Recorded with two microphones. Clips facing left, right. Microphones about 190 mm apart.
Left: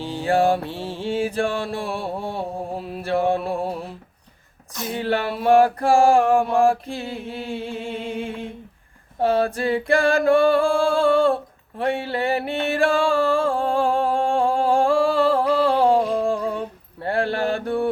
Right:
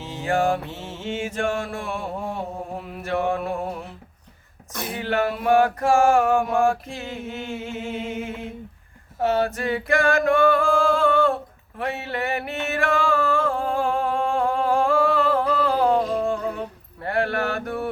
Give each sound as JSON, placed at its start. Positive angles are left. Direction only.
{"t": 0.0, "sound": "mantra", "side_deg": 35}
{"t": 11.8, "sound": "music", "side_deg": 30}